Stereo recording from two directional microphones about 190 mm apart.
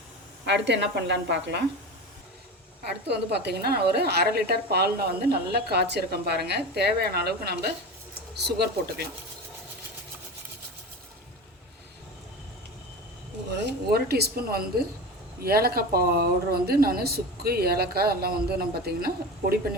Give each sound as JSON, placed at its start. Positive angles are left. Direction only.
{"t": 0.4, "sound": "a woman's voice", "side_deg": -65}
{"t": 2.8, "sound": "a woman's voice", "side_deg": -60}
{"t": 13.7, "sound": "a woman's voice", "side_deg": -55}